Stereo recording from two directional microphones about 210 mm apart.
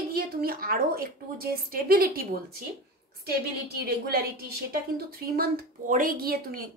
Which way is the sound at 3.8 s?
45° right (ahead or behind).